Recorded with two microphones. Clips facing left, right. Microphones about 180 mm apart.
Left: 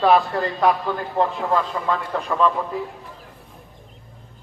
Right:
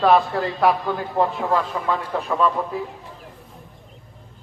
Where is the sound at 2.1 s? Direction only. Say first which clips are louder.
Even; 5° right (ahead or behind).